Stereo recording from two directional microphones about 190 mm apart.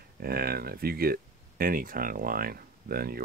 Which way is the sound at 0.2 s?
50° right (ahead or behind).